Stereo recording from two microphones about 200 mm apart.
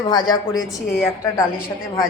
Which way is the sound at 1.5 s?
45° left (ahead or behind).